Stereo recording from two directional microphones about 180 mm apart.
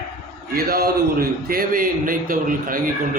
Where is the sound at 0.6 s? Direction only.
55° right (ahead or behind).